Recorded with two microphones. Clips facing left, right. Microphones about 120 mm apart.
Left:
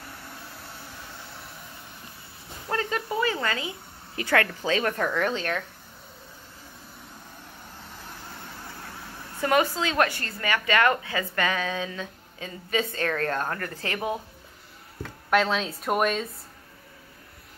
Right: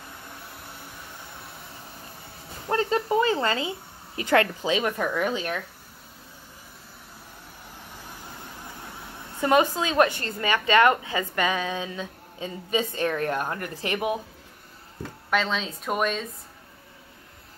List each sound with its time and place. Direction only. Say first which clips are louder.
2.7 s a woman's voice: right 5 dB; 30° right (ahead or behind); by 5.6 s 10° right (ahead or behind)
9.4 s a woman's voice: right 2 dB; 20° right (ahead or behind)
15.2 s speech: left 3 dB; 5° left (ahead or behind)